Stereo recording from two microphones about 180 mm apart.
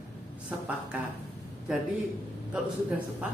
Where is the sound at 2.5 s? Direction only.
5° right (ahead or behind).